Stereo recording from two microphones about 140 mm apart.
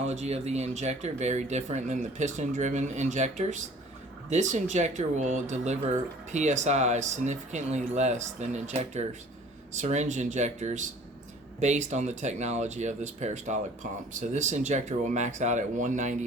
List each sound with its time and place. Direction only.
0.1 s speech: 50° right (ahead or behind)